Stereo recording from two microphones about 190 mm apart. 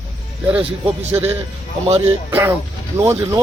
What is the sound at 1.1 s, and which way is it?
Speech, 20° right (ahead or behind).